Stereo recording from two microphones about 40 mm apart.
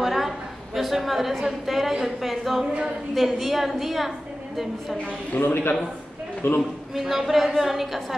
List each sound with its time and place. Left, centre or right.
0.0 s a sound: centre
0.7 s a woman's voice: centre
5.4 s a man's voice: left
6.4 s a man's voice: left
7.0 s a woman's voice: centre